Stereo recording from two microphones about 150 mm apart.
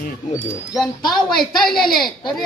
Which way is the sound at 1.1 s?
Centre (ahead or behind).